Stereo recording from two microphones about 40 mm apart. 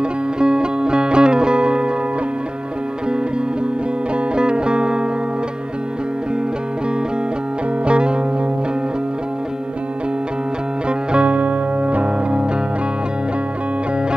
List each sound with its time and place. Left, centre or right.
0.0 s music: right
4.1 s music: right
7.8 s music: right
10.9 s music: right